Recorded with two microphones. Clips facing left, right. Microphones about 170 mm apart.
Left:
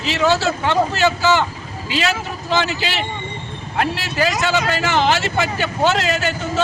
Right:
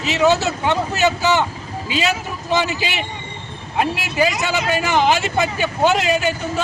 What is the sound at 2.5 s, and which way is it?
A man's voice, 15° right (ahead or behind).